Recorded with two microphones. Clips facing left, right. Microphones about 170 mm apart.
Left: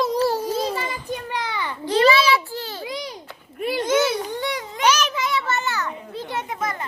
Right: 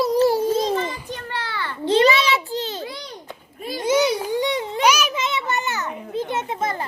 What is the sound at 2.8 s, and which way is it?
Speech, 15° left (ahead or behind).